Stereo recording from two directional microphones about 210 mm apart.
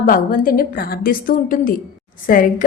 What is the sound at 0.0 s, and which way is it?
A woman's voice, 40° left (ahead or behind).